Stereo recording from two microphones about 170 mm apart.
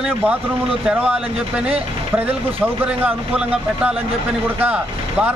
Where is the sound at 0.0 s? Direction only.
10° right (ahead or behind).